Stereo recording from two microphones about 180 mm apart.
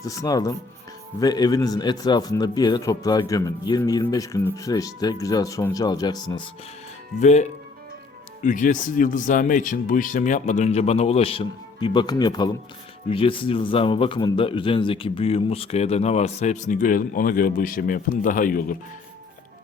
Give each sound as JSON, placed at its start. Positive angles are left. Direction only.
{"t": 0.0, "sound": "a man's voice", "side_deg": 20}
{"t": 7.2, "sound": "a man's voice", "side_deg": 40}